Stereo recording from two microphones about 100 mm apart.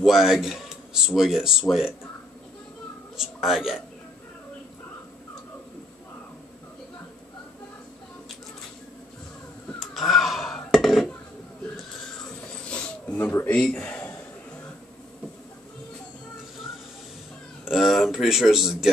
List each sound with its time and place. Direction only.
0.0 s speech: 5° right (ahead or behind)
3.2 s speech: centre (ahead or behind)
9.8 s a sound: centre (ahead or behind)
12.6 s a sound: 10° left (ahead or behind)
13.1 s speech: 20° left (ahead or behind)
13.6 s speech: 10° left (ahead or behind)
17.6 s speech: centre (ahead or behind)